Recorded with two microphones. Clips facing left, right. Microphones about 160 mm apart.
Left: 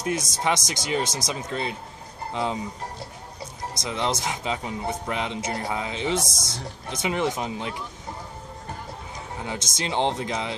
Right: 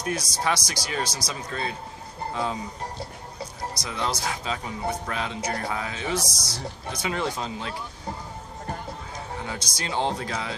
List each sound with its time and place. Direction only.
0.0 s speech: 20° left (ahead or behind)
3.8 s speech: 20° left (ahead or behind)
6.2 s a man's voice: 50° left (ahead or behind)
6.5 s speech: 20° left (ahead or behind)
9.5 s speech: 20° left (ahead or behind)